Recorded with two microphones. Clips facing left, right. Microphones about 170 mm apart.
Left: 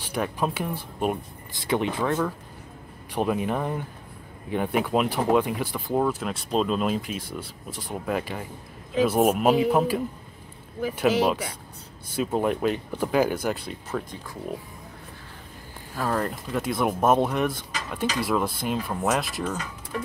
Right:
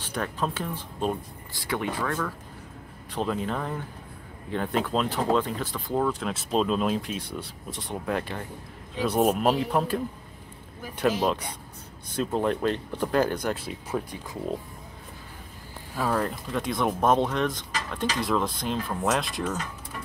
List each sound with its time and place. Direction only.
0.0 s speech: 10° left (ahead or behind)
13.9 s speech: 20° right (ahead or behind)
16.0 s speech: centre (ahead or behind)